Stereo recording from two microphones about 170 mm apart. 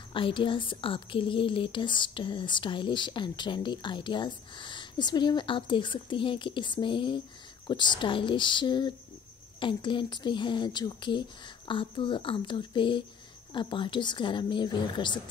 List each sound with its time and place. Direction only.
0.1 s speech: 30° left (ahead or behind)